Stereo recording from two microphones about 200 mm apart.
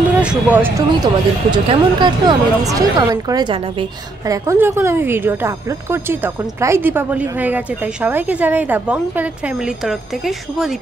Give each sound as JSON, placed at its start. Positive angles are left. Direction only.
{"t": 0.2, "sound": "speech", "side_deg": -5}
{"t": 4.3, "sound": "speech", "side_deg": -15}